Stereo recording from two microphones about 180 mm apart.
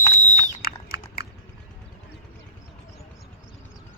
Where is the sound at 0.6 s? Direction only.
55° left (ahead or behind).